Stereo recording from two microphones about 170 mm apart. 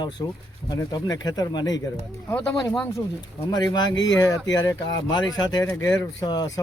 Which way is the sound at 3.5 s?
25° left (ahead or behind).